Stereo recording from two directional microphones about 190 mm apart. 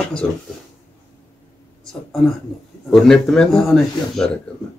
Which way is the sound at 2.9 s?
5° left (ahead or behind).